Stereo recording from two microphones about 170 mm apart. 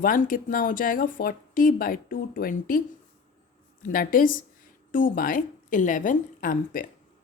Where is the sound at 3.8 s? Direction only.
55° left (ahead or behind).